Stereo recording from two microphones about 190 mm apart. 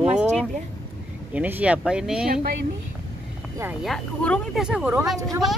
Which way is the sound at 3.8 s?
5° left (ahead or behind).